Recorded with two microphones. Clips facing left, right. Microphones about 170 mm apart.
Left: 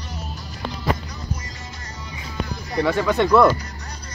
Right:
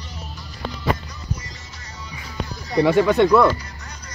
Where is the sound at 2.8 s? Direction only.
15° right (ahead or behind).